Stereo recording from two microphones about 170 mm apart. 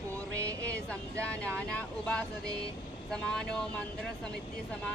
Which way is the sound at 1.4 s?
5° left (ahead or behind).